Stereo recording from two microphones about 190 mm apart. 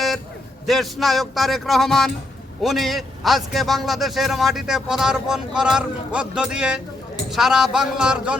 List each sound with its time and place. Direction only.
0.7 s a man's voice: centre (ahead or behind)